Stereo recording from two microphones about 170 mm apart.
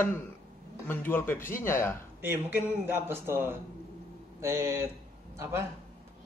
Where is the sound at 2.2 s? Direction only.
10° right (ahead or behind).